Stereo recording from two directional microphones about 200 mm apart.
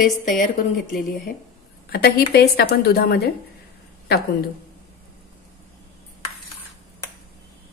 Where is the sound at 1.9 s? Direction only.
50° left (ahead or behind).